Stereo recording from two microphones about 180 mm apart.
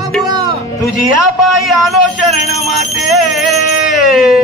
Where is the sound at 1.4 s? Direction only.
Centre (ahead or behind).